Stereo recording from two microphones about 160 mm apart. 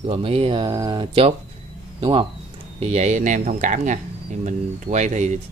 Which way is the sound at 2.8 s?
40° right (ahead or behind).